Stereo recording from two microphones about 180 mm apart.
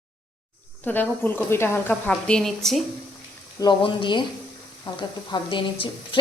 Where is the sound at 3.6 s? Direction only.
25° left (ahead or behind).